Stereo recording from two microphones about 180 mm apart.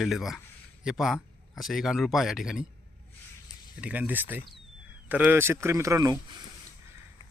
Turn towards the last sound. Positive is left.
turn(degrees=-15)  # may be behind; listen again after turning